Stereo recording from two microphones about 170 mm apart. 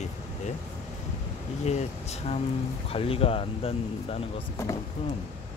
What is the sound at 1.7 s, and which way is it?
Speech, 40° left (ahead or behind).